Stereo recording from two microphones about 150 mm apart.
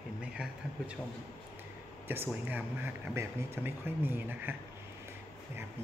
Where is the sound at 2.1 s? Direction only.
15° right (ahead or behind).